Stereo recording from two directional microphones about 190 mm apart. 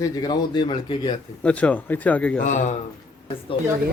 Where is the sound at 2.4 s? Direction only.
40° left (ahead or behind).